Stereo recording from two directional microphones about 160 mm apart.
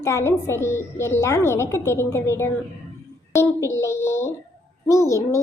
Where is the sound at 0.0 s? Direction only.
15° left (ahead or behind).